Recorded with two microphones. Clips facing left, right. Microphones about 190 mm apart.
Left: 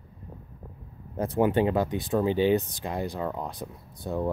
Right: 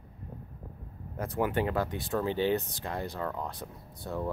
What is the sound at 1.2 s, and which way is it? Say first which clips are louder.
Speech: left 6 dB; 25° left (ahead or behind).